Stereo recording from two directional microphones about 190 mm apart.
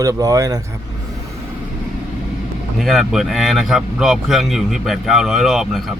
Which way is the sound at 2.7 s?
Centre (ahead or behind).